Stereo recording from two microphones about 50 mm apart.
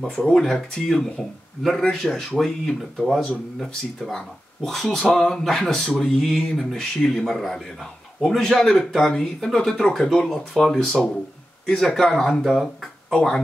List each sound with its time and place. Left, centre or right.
0.0 s speech: centre